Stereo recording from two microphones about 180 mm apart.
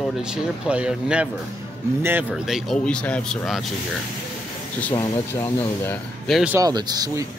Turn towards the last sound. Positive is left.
turn(degrees=-20)  # may be behind; listen again after turning